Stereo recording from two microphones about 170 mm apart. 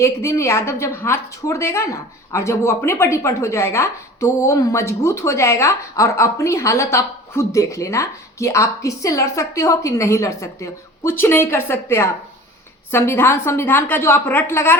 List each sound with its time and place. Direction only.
0.0 s a woman's voice: 15° left (ahead or behind)